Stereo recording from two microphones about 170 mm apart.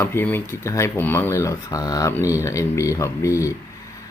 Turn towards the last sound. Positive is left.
turn(degrees=20)  # may be behind; listen again after turning